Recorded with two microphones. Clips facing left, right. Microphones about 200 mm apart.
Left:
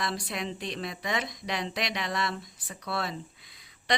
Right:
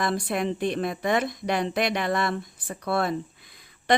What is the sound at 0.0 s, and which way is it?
Speech, 50° right (ahead or behind).